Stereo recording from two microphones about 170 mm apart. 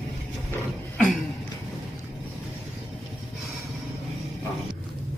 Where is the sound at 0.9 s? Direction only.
Centre (ahead or behind).